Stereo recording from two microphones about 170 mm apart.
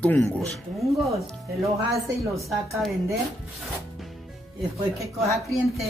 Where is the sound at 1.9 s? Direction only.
20° right (ahead or behind).